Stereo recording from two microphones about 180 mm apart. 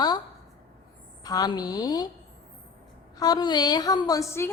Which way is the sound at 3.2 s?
25° left (ahead or behind).